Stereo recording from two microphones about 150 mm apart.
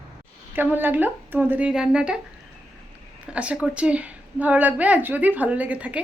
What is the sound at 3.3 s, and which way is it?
A woman's voice, 5° right (ahead or behind).